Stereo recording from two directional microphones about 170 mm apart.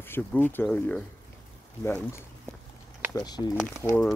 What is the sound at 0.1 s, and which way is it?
Speech, 10° left (ahead or behind).